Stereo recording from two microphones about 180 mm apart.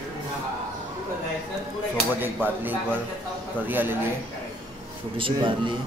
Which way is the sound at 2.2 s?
10° right (ahead or behind).